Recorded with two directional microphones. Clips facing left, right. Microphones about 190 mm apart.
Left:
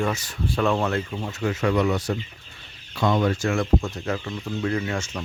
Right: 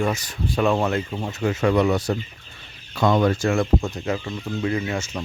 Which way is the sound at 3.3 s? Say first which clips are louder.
Right 2 dB; 30° right (ahead or behind).